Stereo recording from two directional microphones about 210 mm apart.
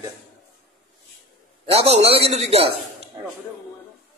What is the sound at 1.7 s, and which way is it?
Speech, 30° right (ahead or behind).